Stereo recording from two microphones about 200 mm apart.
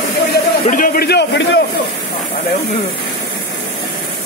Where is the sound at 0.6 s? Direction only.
45° left (ahead or behind).